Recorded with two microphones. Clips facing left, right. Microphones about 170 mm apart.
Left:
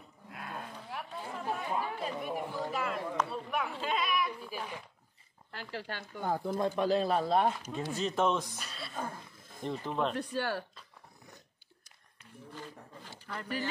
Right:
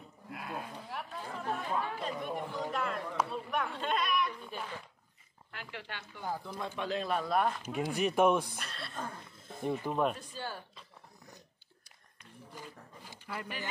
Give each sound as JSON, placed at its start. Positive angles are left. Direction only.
{"t": 0.3, "sound": "chatter", "side_deg": -5}
{"t": 3.3, "sound": "a sound", "side_deg": 0}
{"t": 5.5, "sound": "speech", "side_deg": 35}
{"t": 6.2, "sound": "speech", "side_deg": 50}
{"t": 7.7, "sound": "speech", "side_deg": -15}
{"t": 8.5, "sound": "speech", "side_deg": 5}
{"t": 9.6, "sound": "speech", "side_deg": -10}
{"t": 10.1, "sound": "speech", "side_deg": 75}
{"t": 12.5, "sound": "roaring cats", "side_deg": -10}